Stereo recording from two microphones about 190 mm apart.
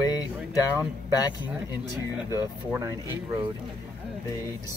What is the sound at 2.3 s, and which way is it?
Speech, 15° right (ahead or behind).